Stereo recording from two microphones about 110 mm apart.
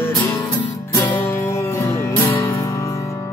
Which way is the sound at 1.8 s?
25° left (ahead or behind).